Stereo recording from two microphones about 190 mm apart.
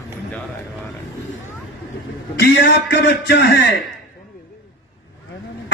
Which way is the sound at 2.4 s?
60° left (ahead or behind).